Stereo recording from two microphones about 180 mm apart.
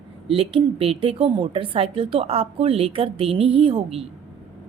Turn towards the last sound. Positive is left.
turn(degrees=-30)  # may be behind; listen again after turning